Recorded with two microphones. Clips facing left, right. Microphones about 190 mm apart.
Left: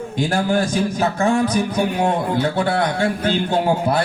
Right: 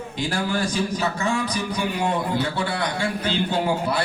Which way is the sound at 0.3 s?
50° left (ahead or behind).